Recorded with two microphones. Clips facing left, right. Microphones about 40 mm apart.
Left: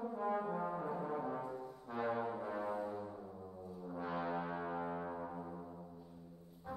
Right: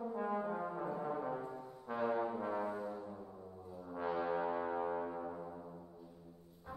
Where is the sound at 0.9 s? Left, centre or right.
Centre.